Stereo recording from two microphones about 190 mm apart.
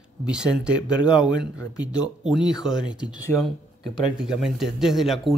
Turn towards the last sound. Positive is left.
turn(degrees=0)  # may be behind; listen again after turning